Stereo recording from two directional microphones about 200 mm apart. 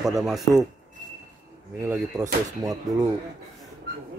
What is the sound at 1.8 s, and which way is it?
Speech, 10° right (ahead or behind).